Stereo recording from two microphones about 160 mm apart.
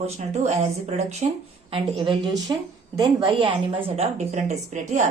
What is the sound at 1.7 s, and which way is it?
A woman's voice, 30° right (ahead or behind).